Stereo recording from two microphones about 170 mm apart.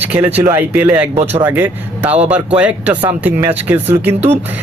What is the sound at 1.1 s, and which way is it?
Speech, 40° right (ahead or behind).